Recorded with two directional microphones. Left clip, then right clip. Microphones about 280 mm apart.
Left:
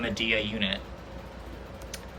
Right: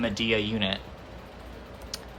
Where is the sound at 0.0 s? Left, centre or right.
Centre.